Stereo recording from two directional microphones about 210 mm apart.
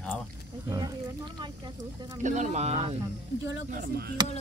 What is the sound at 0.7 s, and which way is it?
Speech, 20° right (ahead or behind).